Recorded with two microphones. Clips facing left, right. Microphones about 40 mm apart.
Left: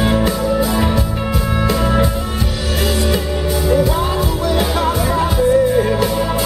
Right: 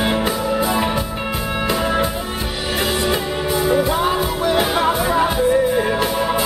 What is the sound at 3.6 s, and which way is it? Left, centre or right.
Music, centre.